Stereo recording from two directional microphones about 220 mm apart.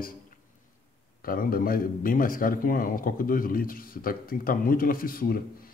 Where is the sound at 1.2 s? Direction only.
40° left (ahead or behind).